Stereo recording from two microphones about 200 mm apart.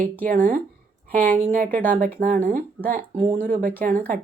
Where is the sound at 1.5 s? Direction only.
45° right (ahead or behind).